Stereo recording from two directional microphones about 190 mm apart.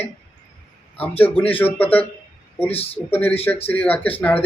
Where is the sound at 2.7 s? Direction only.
30° left (ahead or behind).